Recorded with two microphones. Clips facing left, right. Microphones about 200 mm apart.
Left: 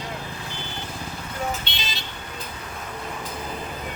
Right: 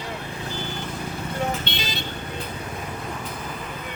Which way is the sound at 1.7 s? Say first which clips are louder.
Right 5 dB; 55° right (ahead or behind).